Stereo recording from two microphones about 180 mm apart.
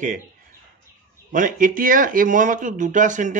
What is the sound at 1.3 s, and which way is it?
A man's voice, 45° right (ahead or behind).